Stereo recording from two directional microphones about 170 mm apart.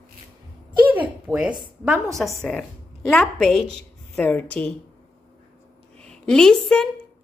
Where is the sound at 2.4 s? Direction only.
5° left (ahead or behind).